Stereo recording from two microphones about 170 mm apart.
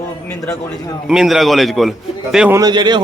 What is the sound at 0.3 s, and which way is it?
Speech, 20° left (ahead or behind).